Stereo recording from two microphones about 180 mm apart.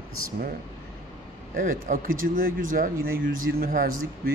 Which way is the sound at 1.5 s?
50° right (ahead or behind).